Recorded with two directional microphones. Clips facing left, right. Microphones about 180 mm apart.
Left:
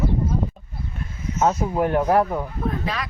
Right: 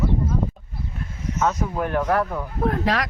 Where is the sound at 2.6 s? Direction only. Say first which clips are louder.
Right 4 dB; 75° right (ahead or behind).